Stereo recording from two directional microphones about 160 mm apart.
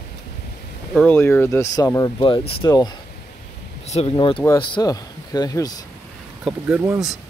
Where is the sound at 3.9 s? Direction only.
40° left (ahead or behind); by 5.7 s 25° left (ahead or behind).